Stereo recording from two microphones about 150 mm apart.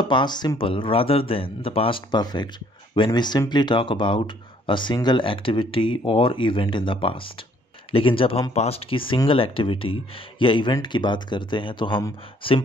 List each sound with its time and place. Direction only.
0.0 s speech: 30° left (ahead or behind)